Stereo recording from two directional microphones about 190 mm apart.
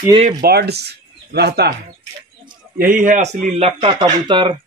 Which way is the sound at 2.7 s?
45° right (ahead or behind).